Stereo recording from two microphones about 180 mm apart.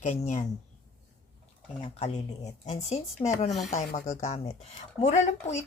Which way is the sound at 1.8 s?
40° left (ahead or behind).